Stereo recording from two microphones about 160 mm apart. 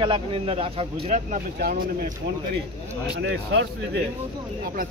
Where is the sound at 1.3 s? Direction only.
60° right (ahead or behind).